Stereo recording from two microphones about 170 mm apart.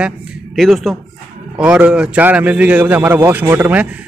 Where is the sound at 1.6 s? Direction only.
5° right (ahead or behind).